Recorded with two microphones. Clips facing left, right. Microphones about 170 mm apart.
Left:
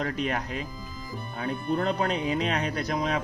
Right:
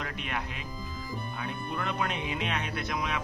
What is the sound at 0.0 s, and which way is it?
Speech, 40° left (ahead or behind).